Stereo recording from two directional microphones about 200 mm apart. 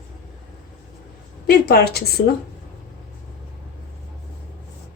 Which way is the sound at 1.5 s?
50° left (ahead or behind).